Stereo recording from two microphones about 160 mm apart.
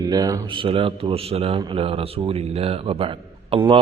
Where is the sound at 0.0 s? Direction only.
25° right (ahead or behind).